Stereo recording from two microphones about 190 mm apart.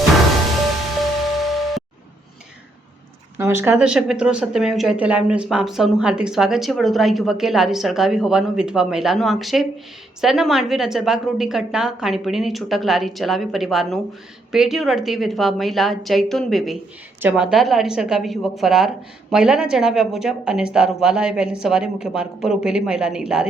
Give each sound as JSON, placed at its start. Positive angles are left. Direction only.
{"t": 1.4, "sound": "music", "side_deg": 0}
{"t": 3.3, "sound": "speech", "side_deg": -15}